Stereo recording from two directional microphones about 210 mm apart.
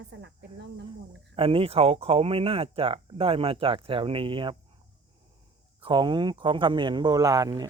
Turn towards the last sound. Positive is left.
turn(degrees=-20)  # may be behind; listen again after turning